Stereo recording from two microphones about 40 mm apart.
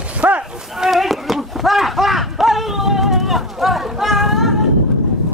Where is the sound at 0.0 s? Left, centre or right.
Right.